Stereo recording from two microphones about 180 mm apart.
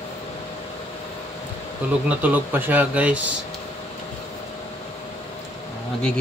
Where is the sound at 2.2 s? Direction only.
10° right (ahead or behind).